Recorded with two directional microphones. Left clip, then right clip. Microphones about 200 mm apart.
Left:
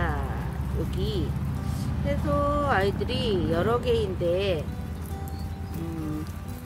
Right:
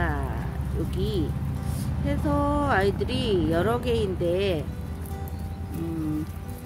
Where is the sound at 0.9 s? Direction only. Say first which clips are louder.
Right 4 dB; 45° right (ahead or behind).